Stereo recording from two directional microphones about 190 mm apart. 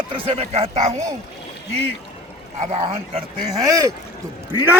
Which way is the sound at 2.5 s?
30° right (ahead or behind).